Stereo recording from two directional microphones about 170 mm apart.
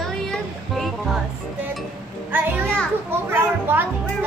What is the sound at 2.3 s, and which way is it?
A child's voice, 10° right (ahead or behind).